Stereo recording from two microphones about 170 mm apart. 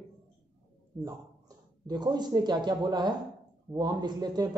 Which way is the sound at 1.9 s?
25° right (ahead or behind).